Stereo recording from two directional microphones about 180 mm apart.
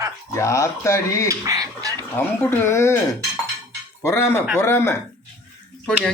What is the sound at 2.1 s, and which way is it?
Speech, 10° left (ahead or behind).